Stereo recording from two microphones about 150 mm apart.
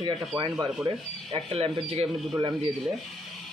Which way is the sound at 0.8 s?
40° right (ahead or behind).